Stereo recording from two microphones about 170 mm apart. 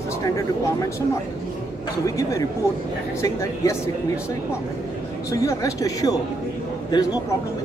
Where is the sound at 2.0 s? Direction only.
20° left (ahead or behind).